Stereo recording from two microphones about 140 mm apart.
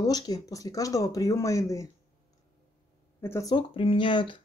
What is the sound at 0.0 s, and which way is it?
Speech, 25° left (ahead or behind).